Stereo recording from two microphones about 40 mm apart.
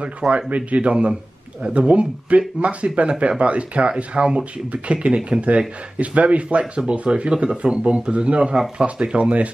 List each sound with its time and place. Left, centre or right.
0.5 s speech: right